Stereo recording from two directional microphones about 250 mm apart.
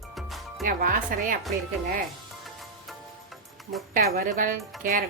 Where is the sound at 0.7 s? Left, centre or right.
Right.